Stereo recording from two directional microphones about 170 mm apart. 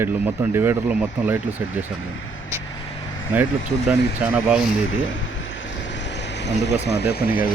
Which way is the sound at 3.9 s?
10° right (ahead or behind).